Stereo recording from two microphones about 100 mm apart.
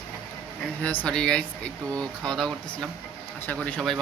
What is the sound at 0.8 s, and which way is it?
Speech, 15° left (ahead or behind).